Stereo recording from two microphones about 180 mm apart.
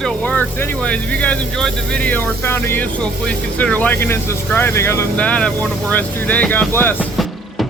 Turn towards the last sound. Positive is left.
turn(degrees=10)  # may be behind; listen again after turning